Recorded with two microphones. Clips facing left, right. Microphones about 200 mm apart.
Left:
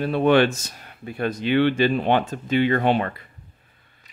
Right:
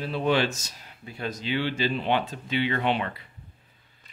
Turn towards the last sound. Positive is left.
turn(degrees=45)  # may be behind; listen again after turning